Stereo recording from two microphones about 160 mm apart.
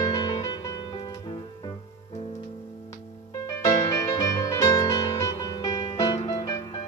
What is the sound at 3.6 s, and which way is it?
Music, 20° left (ahead or behind).